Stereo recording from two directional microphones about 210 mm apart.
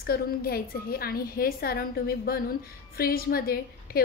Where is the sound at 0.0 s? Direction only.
45° left (ahead or behind).